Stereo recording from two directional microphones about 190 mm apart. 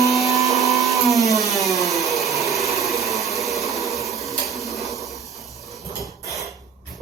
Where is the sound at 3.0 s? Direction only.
Centre (ahead or behind).